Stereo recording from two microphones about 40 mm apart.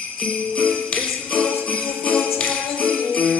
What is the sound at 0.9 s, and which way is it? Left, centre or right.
Jingle bell, left.